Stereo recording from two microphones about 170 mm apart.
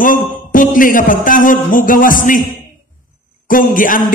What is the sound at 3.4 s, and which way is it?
Speech, 55° left (ahead or behind).